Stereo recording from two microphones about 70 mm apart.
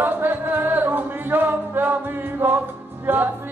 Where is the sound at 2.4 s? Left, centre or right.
Right.